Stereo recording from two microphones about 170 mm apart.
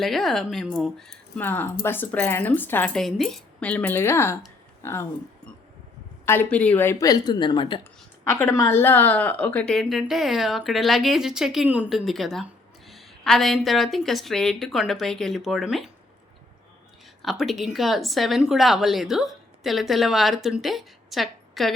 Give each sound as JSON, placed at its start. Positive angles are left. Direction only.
{"t": 0.0, "sound": "speech", "side_deg": 0}
{"t": 6.2, "sound": "speech", "side_deg": 15}
{"t": 8.3, "sound": "speech", "side_deg": 15}
{"t": 17.2, "sound": "speech", "side_deg": 0}